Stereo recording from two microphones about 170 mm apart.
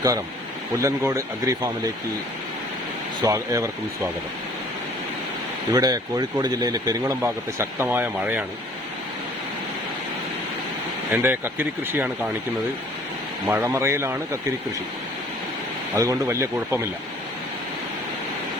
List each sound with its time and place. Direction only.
0.8 s speech: 15° right (ahead or behind)
3.2 s speech: 20° right (ahead or behind)
5.7 s speech: 25° right (ahead or behind)
11.1 s speech: 10° right (ahead or behind)
13.5 s speech: 15° right (ahead or behind)
16.0 s speech: 20° right (ahead or behind)